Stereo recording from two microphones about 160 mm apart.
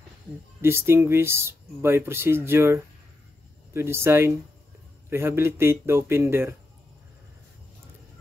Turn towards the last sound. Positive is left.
turn(degrees=-15)  # may be behind; listen again after turning